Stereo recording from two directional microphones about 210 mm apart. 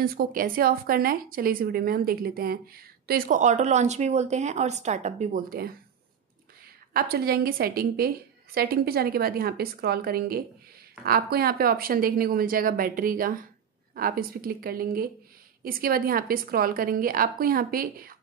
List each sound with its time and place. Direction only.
0.0 s speech: 45° right (ahead or behind)
6.9 s speech: 45° right (ahead or behind)